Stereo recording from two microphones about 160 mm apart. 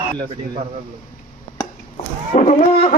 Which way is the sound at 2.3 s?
50° left (ahead or behind).